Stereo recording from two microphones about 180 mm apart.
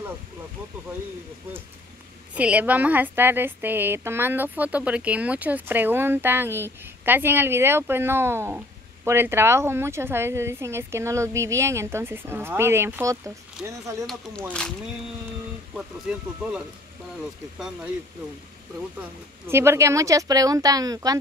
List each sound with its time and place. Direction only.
2.3 s a woman's voice: 10° right (ahead or behind)
15.7 s speech: 5° right (ahead or behind)
19.4 s a woman's voice: 15° right (ahead or behind)